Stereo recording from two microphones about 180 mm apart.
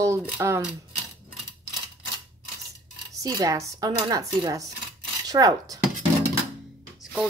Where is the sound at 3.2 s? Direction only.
20° right (ahead or behind).